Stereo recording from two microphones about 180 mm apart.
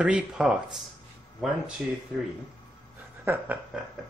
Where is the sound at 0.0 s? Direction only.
5° right (ahead or behind).